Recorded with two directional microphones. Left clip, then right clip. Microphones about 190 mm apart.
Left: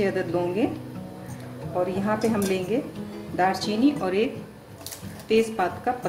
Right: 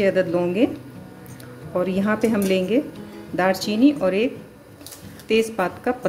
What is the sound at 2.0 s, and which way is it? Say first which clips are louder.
A woman's voice: right 4 dB; 45° right (ahead or behind).